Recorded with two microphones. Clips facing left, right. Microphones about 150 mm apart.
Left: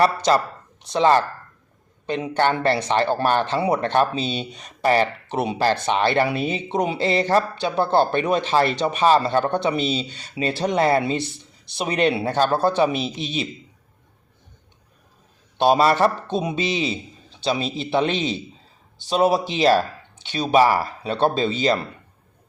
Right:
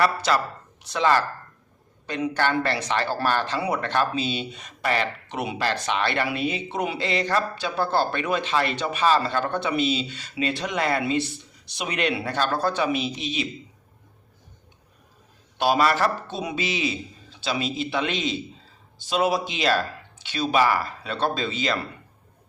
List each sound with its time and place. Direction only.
0.3 s a man's voice: 35° left (ahead or behind)
15.5 s a man's voice: 25° left (ahead or behind)